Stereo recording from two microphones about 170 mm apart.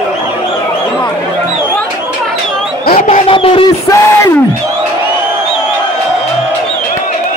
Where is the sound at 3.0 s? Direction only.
35° left (ahead or behind).